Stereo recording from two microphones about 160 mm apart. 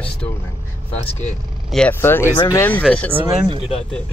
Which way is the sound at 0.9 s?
45° left (ahead or behind).